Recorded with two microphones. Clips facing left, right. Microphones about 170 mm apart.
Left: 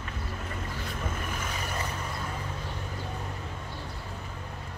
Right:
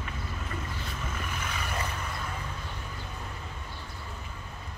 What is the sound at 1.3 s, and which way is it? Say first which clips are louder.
Vehicle: left 1 dB; 40° left (ahead or behind).